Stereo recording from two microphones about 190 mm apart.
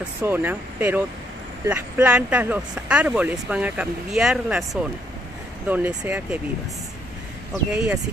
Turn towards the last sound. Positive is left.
turn(degrees=-5)  # may be behind; listen again after turning